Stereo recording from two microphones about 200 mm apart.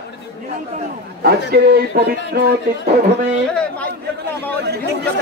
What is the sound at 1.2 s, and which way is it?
Speech, 55° right (ahead or behind).